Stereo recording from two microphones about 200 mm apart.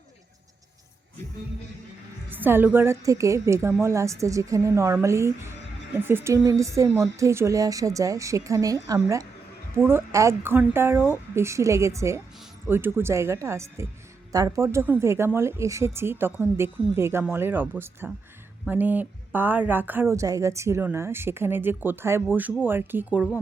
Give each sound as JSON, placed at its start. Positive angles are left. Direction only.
{"t": 2.3, "sound": "speech", "side_deg": -10}